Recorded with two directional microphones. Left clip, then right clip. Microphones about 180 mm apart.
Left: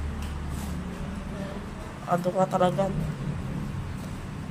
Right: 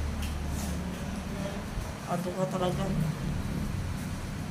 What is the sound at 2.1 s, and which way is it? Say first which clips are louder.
Speech: left 7 dB; 70° left (ahead or behind).